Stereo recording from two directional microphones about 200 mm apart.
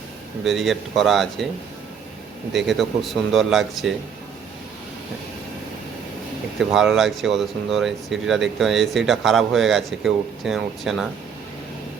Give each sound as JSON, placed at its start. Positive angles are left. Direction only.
{"t": 0.4, "sound": "speech", "side_deg": 0}
{"t": 2.6, "sound": "speech", "side_deg": 0}
{"t": 6.6, "sound": "speech", "side_deg": 0}